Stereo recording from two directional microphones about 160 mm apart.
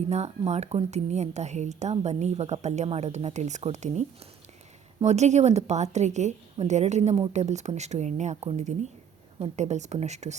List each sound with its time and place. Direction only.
0.1 s a woman's voice: 45° right (ahead or behind)
5.0 s a woman's voice: 45° right (ahead or behind)